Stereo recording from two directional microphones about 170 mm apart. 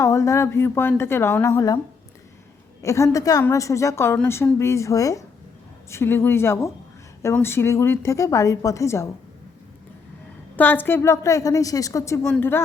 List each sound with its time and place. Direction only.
0.0 s a woman's voice: 20° left (ahead or behind)
2.8 s a woman's voice: 15° left (ahead or behind)
10.6 s a woman's voice: 10° left (ahead or behind)